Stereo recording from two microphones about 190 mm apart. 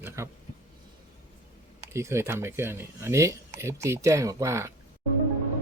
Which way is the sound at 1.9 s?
15° right (ahead or behind).